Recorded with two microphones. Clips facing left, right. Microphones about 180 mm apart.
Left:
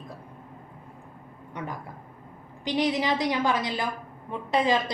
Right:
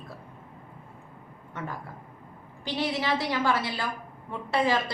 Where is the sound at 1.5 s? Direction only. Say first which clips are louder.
Left 1 dB; 15° left (ahead or behind).